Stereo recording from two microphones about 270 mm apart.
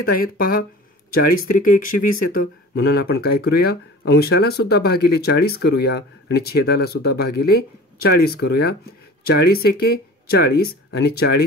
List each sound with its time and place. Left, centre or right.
0.2 s speech: left